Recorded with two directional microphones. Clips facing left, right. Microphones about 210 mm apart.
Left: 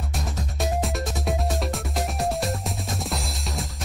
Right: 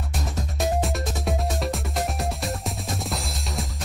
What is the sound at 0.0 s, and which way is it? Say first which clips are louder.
Music: right 1 dB; centre (ahead or behind).